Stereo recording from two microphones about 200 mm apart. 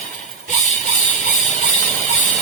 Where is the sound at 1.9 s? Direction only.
35° right (ahead or behind).